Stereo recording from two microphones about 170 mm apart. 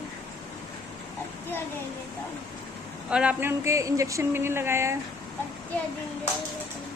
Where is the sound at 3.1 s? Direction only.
5° right (ahead or behind).